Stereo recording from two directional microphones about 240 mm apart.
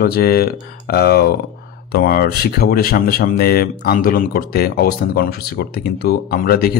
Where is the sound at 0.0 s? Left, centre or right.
Left.